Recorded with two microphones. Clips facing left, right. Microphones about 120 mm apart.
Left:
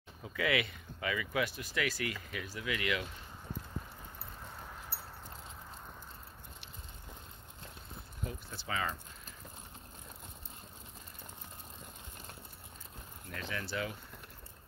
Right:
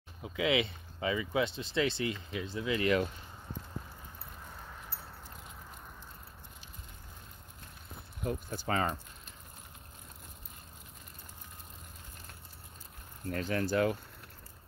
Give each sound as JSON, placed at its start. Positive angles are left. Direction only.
{"t": 0.2, "sound": "speech", "side_deg": -20}
{"t": 8.3, "sound": "speech", "side_deg": -45}
{"t": 13.3, "sound": "speech", "side_deg": -45}